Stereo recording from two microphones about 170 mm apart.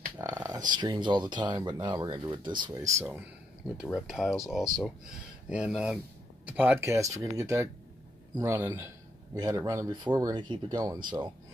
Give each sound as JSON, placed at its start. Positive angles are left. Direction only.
{"t": 0.2, "sound": "a sound", "side_deg": -20}
{"t": 0.7, "sound": "speech", "side_deg": -25}
{"t": 3.0, "sound": "speech", "side_deg": -10}